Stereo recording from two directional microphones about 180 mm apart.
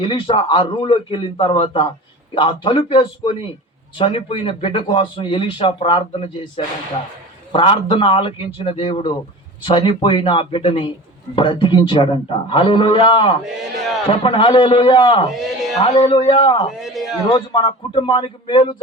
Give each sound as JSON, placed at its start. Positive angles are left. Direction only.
{"t": 0.0, "sound": "speech", "side_deg": 30}
{"t": 16.8, "sound": "a man's voice", "side_deg": 0}
{"t": 17.3, "sound": "speech", "side_deg": 25}